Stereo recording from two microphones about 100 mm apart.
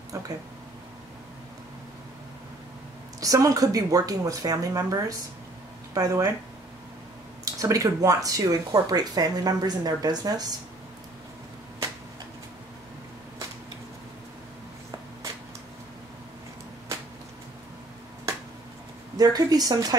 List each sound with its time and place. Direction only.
0.1 s speech: 35° right (ahead or behind)
3.2 s speech: 35° right (ahead or behind)
7.4 s speech: 35° right (ahead or behind)
19.1 s speech: 40° right (ahead or behind)